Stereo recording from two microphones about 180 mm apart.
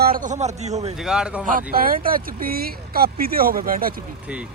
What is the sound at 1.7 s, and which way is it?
Speech, 50° right (ahead or behind).